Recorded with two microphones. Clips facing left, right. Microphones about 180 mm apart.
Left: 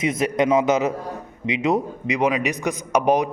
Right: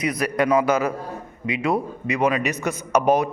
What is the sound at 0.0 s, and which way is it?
A man's voice, 25° left (ahead or behind).